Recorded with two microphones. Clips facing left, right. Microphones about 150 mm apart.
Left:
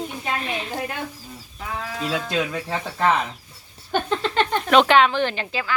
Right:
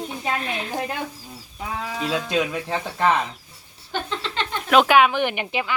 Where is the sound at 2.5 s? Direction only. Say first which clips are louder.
Right 1 dB; 5° right (ahead or behind).